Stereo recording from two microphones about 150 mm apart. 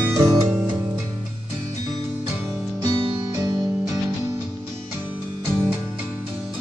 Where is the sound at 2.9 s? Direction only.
30° right (ahead or behind).